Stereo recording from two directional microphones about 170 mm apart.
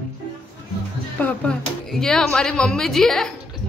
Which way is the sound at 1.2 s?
10° left (ahead or behind).